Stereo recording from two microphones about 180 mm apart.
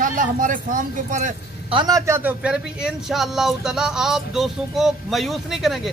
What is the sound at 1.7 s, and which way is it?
Speech, 20° right (ahead or behind).